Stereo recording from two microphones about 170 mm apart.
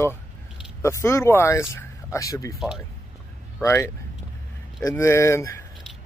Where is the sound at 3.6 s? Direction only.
15° left (ahead or behind).